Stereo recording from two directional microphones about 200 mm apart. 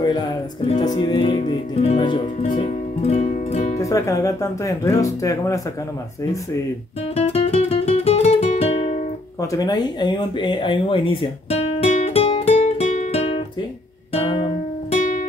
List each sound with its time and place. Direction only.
0.7 s music: 20° left (ahead or behind); by 3.7 s 35° left (ahead or behind)
3.7 s speech: 15° left (ahead or behind)
7.2 s music: 30° left (ahead or behind)
9.4 s a sound: 15° left (ahead or behind)
14.1 s music: 25° left (ahead or behind)